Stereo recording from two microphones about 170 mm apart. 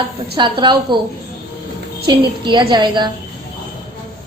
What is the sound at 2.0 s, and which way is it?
A woman's voice, 30° right (ahead or behind).